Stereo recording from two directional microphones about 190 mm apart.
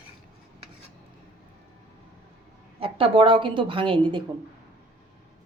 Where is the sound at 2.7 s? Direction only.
30° right (ahead or behind).